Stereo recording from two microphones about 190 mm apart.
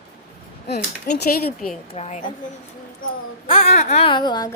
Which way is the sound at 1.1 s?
50° left (ahead or behind).